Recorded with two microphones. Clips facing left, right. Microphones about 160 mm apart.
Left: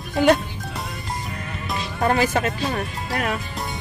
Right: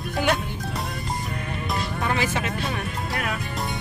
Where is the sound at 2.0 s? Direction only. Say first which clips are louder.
Left 8 dB; 45° left (ahead or behind).